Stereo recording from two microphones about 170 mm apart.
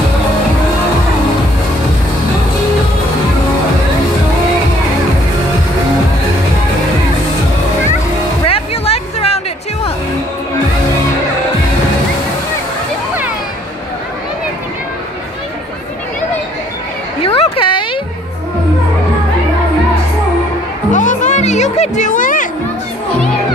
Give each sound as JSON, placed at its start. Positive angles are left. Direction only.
{"t": 8.5, "sound": "music", "side_deg": 35}
{"t": 17.2, "sound": "a sound", "side_deg": 35}
{"t": 20.9, "sound": "music", "side_deg": 45}